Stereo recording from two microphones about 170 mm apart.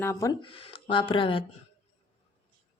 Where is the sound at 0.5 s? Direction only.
30° left (ahead or behind).